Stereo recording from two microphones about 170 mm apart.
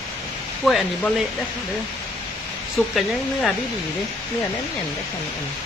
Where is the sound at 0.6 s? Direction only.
Centre (ahead or behind).